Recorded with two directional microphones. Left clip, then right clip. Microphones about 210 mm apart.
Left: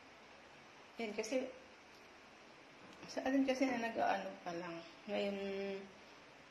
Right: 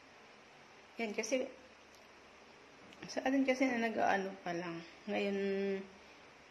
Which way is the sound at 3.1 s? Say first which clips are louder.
Right 3 dB; 45° right (ahead or behind).